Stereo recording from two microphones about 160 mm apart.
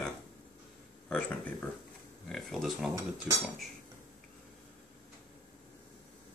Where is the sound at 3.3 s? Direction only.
20° right (ahead or behind).